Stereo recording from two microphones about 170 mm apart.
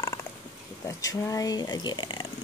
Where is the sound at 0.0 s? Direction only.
15° left (ahead or behind).